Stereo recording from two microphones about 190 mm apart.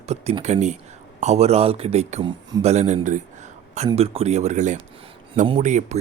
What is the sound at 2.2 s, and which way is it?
Speech, 20° right (ahead or behind).